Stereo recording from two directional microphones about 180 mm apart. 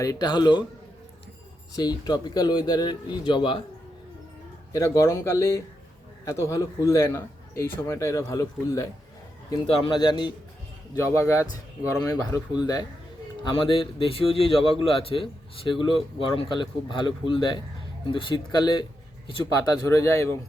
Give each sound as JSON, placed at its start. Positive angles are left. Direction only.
{"t": 0.0, "sound": "a man's voice", "side_deg": 20}
{"t": 1.7, "sound": "a man's voice", "side_deg": 20}
{"t": 4.7, "sound": "a man's voice", "side_deg": 15}
{"t": 19.9, "sound": "a man's voice", "side_deg": 15}